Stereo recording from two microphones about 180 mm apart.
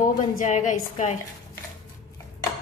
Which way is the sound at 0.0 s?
45° left (ahead or behind).